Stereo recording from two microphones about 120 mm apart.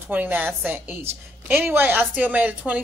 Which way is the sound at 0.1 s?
15° right (ahead or behind).